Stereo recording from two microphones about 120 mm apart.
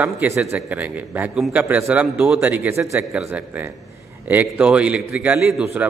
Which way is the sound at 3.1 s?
10° right (ahead or behind).